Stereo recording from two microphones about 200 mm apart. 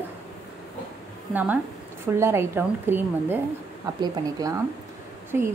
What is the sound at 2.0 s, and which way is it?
A woman's voice, 10° right (ahead or behind).